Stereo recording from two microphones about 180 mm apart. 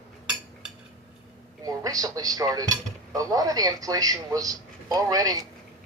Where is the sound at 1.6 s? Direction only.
20° right (ahead or behind).